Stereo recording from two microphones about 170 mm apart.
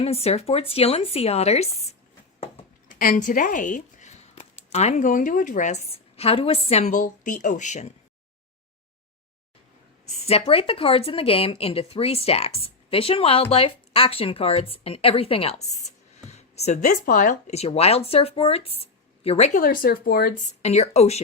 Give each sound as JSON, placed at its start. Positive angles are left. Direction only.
{"t": 0.0, "sound": "speech", "side_deg": 35}
{"t": 2.4, "sound": "a sound", "side_deg": 40}
{"t": 3.0, "sound": "speech", "side_deg": 55}
{"t": 10.1, "sound": "speech", "side_deg": 35}
{"t": 16.8, "sound": "speech", "side_deg": 55}
{"t": 20.6, "sound": "speech", "side_deg": 40}